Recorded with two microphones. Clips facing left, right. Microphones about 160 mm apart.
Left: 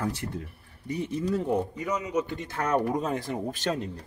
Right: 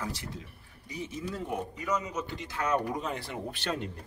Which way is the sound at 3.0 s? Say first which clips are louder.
Left 6 dB; 45° left (ahead or behind).